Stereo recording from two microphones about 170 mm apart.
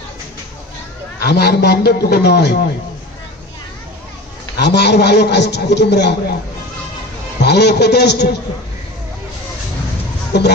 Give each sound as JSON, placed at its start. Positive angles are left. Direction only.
{"t": 1.2, "sound": "a man's voice", "side_deg": 75}
{"t": 4.6, "sound": "a man's voice", "side_deg": 80}
{"t": 7.3, "sound": "a man's voice", "side_deg": 80}
{"t": 10.3, "sound": "a man's voice", "side_deg": 80}